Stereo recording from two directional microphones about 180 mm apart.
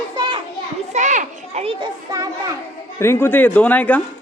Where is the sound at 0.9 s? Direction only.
40° right (ahead or behind).